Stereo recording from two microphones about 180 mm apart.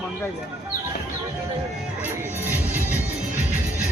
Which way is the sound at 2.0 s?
10° right (ahead or behind).